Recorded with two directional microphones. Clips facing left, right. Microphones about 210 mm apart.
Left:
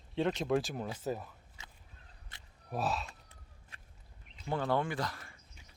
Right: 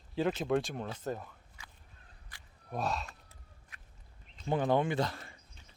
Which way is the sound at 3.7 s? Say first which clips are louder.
Left 1 dB; 30° left (ahead or behind).